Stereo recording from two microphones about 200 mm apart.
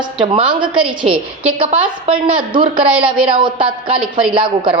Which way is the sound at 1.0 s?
5° right (ahead or behind).